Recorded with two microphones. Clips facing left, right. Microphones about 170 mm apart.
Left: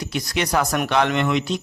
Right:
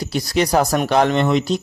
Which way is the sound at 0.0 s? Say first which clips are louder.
Right 5 dB; 35° right (ahead or behind).